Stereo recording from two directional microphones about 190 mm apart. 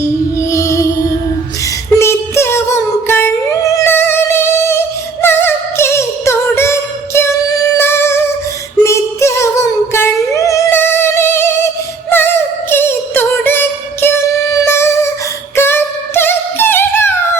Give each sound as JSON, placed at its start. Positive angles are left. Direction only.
{"t": 0.5, "sound": "music", "side_deg": 15}
{"t": 2.0, "sound": "singing", "side_deg": 15}
{"t": 5.2, "sound": "music", "side_deg": 10}
{"t": 8.8, "sound": "singing", "side_deg": 15}
{"t": 12.1, "sound": "music", "side_deg": 10}